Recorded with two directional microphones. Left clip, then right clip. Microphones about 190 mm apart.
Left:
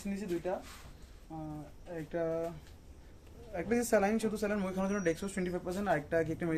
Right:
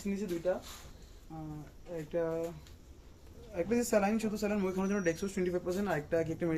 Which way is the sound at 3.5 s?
20° left (ahead or behind).